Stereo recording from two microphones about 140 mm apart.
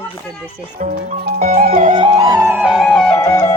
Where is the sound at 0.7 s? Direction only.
65° right (ahead or behind); by 1.7 s 80° right.